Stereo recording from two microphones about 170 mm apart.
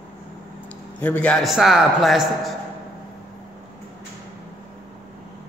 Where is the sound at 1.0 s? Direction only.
10° left (ahead or behind).